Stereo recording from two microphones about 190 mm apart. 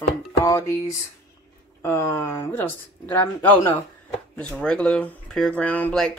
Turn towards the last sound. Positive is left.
turn(degrees=5)  # may be behind; listen again after turning